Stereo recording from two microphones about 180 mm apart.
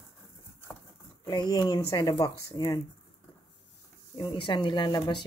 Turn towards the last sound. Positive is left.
turn(degrees=25)  # may be behind; listen again after turning